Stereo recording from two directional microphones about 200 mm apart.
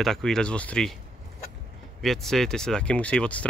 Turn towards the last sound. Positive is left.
turn(degrees=5)  # may be behind; listen again after turning